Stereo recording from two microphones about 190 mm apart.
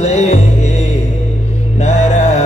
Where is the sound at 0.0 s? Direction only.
35° left (ahead or behind).